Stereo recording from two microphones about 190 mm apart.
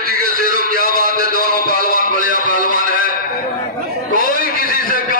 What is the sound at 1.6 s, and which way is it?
Music, 50° right (ahead or behind).